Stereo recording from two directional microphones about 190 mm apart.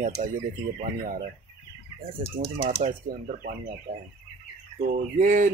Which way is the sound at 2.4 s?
50° right (ahead or behind).